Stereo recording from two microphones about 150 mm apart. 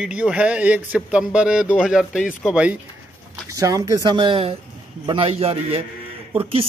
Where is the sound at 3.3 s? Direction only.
25° right (ahead or behind).